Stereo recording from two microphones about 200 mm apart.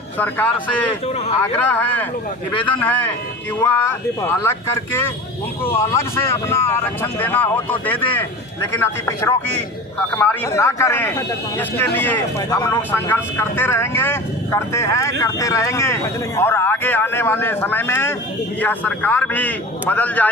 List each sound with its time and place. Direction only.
0.2 s speech: 10° left (ahead or behind)
2.6 s a man's voice: 25° left (ahead or behind)
2.8 s speech: 10° left (ahead or behind)
8.7 s speech: 10° left (ahead or behind)